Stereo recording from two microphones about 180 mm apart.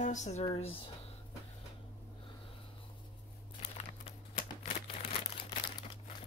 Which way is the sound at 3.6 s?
35° left (ahead or behind).